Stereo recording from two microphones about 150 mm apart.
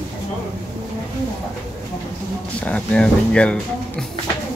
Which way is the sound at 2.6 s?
5° left (ahead or behind).